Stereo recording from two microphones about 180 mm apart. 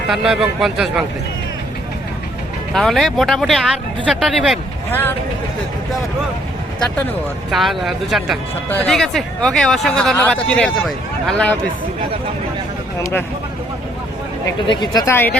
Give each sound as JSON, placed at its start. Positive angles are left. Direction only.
{"t": 0.1, "sound": "speech", "side_deg": 0}
{"t": 2.7, "sound": "speech", "side_deg": 0}
{"t": 7.5, "sound": "speech", "side_deg": 0}
{"t": 14.7, "sound": "speech", "side_deg": 25}